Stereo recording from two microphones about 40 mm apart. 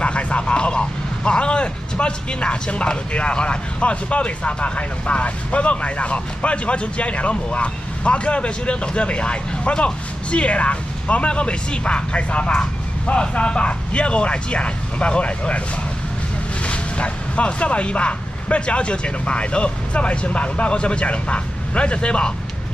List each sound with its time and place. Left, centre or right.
0.0 s speech: left
16.6 s speech: left